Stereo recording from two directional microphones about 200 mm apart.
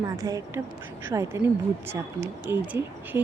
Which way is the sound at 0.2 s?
15° right (ahead or behind).